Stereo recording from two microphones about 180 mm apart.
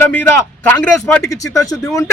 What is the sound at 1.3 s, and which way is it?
Speech, 20° left (ahead or behind).